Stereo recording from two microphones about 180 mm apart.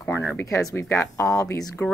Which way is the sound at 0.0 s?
10° left (ahead or behind).